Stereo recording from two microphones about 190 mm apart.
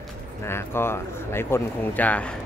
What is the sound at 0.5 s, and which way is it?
Speech, 15° left (ahead or behind).